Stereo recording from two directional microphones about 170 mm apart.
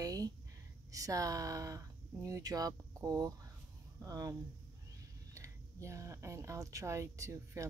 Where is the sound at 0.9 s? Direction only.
20° right (ahead or behind).